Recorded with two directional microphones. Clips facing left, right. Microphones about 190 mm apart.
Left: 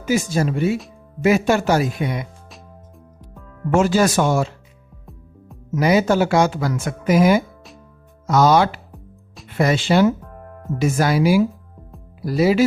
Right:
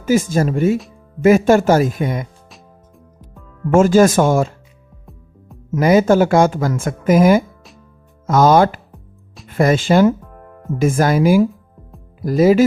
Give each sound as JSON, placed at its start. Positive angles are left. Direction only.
{"t": 0.0, "sound": "speech", "side_deg": -45}
{"t": 3.7, "sound": "speech", "side_deg": -50}
{"t": 5.7, "sound": "speech", "side_deg": -50}
{"t": 8.9, "sound": "music", "side_deg": 0}
{"t": 9.5, "sound": "speech", "side_deg": -45}